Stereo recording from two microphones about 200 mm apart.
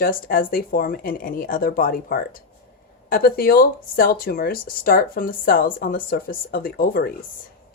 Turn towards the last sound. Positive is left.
turn(degrees=50)  # may be behind; listen again after turning